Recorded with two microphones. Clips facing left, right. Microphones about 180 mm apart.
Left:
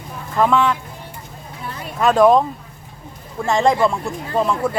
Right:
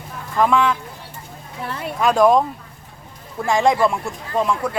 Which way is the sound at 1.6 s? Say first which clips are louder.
Right 3 dB; 65° right (ahead or behind).